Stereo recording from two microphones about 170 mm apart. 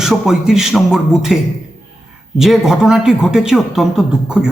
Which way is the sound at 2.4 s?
Centre (ahead or behind).